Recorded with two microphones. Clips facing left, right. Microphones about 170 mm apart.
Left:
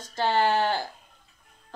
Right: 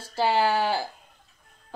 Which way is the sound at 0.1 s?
10° right (ahead or behind).